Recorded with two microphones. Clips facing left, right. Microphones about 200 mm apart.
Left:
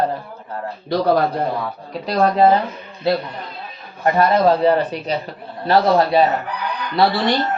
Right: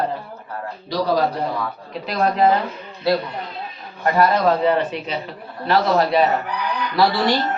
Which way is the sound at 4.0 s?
25° left (ahead or behind).